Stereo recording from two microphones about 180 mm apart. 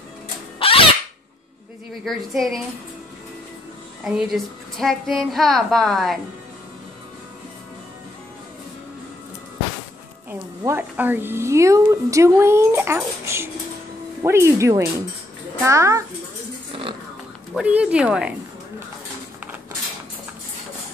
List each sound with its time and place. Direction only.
0.6 s a sound: 30° left (ahead or behind)
2.0 s a woman's voice: centre (ahead or behind)
4.0 s a woman's voice: 5° right (ahead or behind)
10.6 s a woman's voice: 10° right (ahead or behind)
17.6 s a woman's voice: 5° right (ahead or behind)